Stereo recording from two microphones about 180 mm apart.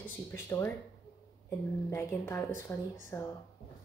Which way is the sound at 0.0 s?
15° left (ahead or behind).